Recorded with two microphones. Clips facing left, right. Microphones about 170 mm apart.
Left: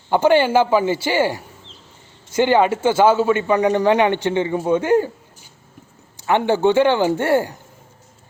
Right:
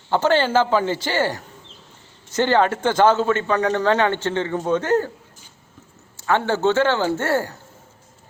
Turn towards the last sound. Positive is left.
turn(degrees=15)  # may be behind; listen again after turning